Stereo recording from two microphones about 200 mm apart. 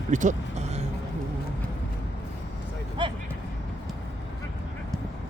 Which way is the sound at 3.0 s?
25° right (ahead or behind).